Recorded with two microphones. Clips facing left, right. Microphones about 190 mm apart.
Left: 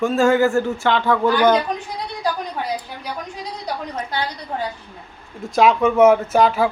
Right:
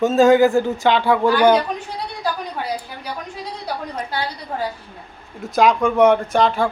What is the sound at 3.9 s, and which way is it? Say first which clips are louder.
Speech: even; 10° right (ahead or behind).